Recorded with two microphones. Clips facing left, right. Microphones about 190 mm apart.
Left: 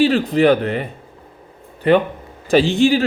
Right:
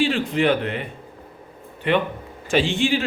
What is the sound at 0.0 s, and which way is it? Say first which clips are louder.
Speech: left 6 dB; 40° left (ahead or behind).